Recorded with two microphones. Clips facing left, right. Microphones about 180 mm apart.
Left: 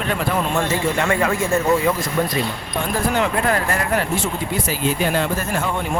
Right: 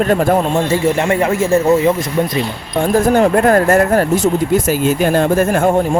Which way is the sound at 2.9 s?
45° right (ahead or behind).